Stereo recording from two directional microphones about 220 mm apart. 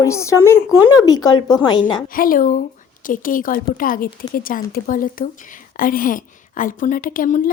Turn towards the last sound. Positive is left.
turn(degrees=35)  # may be behind; listen again after turning